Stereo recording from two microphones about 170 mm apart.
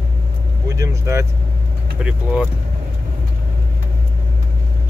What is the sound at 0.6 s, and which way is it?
Speech, 20° right (ahead or behind).